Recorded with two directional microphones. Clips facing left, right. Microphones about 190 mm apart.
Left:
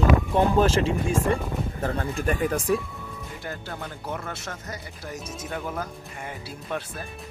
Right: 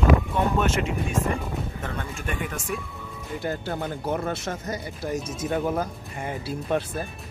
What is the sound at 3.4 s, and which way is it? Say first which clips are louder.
Speech: right 7 dB; 30° right (ahead or behind).